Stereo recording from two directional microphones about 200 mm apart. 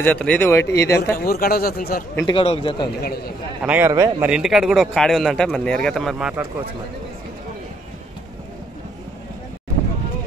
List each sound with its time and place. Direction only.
0.0 s speech: 5° left (ahead or behind)
1.1 s speech: 50° left (ahead or behind)
2.2 s a man's voice: 30° left (ahead or behind)
3.0 s speech: 50° left (ahead or behind)
3.6 s speech: 10° right (ahead or behind)
4.3 s speech: 5° right (ahead or behind)